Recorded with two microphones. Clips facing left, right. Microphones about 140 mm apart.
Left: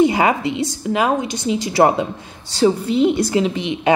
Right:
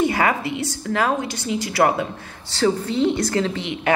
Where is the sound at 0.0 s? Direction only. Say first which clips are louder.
Left 5 dB; 20° left (ahead or behind).